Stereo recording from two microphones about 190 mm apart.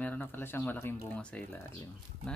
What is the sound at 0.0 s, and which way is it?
Speech, 10° left (ahead or behind).